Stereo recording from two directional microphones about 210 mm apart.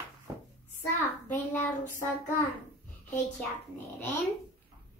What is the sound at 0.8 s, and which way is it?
Speech, 10° left (ahead or behind).